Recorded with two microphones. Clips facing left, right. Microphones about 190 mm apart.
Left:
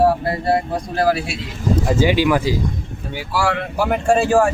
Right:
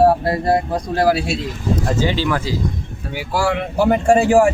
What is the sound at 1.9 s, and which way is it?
Speech, 10° left (ahead or behind).